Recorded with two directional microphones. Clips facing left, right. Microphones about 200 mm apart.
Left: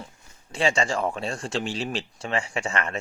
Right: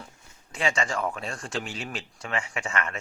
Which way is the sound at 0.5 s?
30° left (ahead or behind).